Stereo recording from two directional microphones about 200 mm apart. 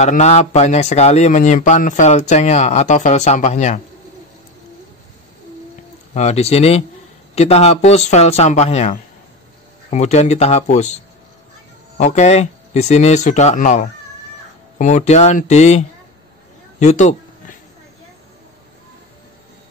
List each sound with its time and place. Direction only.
0.0 s speech: 35° left (ahead or behind)
6.1 s speech: 35° left (ahead or behind)
12.0 s speech: 35° left (ahead or behind)
16.8 s a sound: 35° left (ahead or behind)